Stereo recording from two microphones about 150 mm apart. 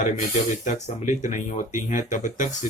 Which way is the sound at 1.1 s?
55° left (ahead or behind).